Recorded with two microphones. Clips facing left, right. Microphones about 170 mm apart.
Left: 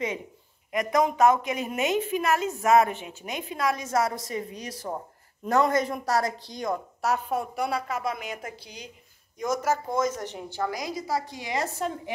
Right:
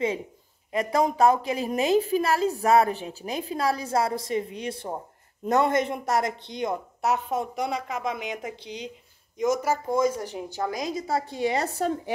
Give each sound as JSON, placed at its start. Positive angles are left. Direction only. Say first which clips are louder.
{"t": 0.7, "sound": "a woman's voice", "louder": "even", "side_deg": -30}
{"t": 9.5, "sound": "a woman's voice", "louder": "right 1 dB", "side_deg": -10}